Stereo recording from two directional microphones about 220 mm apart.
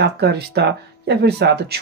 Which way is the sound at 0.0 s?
50° right (ahead or behind).